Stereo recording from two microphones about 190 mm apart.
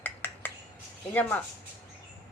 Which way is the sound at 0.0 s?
10° left (ahead or behind).